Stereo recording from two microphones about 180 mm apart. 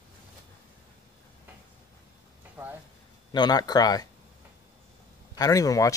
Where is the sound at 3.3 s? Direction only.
25° left (ahead or behind).